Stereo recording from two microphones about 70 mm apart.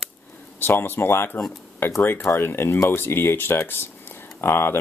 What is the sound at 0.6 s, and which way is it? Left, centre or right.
Speech, left.